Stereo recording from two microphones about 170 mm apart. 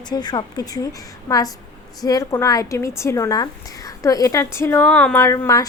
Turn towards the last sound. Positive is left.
turn(degrees=20)  # may be behind; listen again after turning